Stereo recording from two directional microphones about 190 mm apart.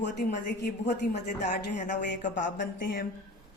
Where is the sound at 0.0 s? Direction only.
60° left (ahead or behind).